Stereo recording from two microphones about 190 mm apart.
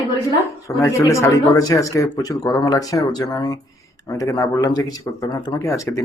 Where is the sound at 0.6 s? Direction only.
15° left (ahead or behind).